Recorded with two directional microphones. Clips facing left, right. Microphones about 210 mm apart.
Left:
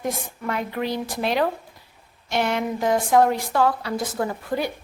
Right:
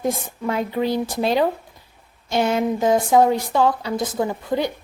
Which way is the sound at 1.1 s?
25° right (ahead or behind).